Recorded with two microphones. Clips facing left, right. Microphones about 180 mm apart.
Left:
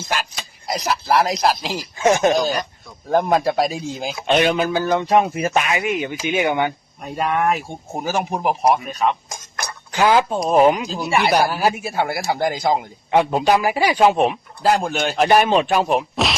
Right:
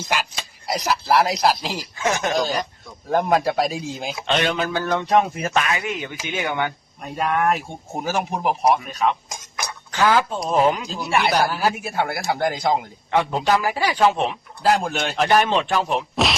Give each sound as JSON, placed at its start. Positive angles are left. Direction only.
{"t": 0.7, "sound": "speech", "side_deg": 0}
{"t": 2.0, "sound": "speech", "side_deg": 20}
{"t": 3.1, "sound": "speech", "side_deg": 0}
{"t": 4.3, "sound": "a man's voice", "side_deg": 10}
{"t": 7.0, "sound": "speech", "side_deg": 5}
{"t": 9.9, "sound": "a man's voice", "side_deg": 15}
{"t": 10.8, "sound": "speech", "side_deg": 0}
{"t": 11.3, "sound": "a man's voice", "side_deg": 15}
{"t": 13.1, "sound": "a man's voice", "side_deg": 15}
{"t": 14.6, "sound": "a man's voice", "side_deg": 0}